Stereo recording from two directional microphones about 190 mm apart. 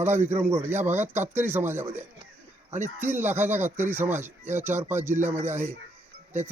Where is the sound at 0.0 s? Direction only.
10° right (ahead or behind).